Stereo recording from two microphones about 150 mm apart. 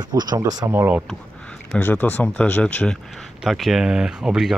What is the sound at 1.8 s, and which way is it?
Speech, 15° left (ahead or behind).